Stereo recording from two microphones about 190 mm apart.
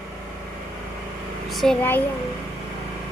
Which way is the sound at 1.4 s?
Centre (ahead or behind).